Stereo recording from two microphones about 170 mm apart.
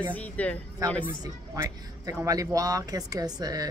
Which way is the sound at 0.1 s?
10° left (ahead or behind).